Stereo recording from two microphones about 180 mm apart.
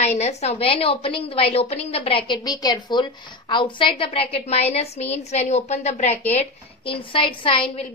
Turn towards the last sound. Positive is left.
turn(degrees=30)  # may be behind; listen again after turning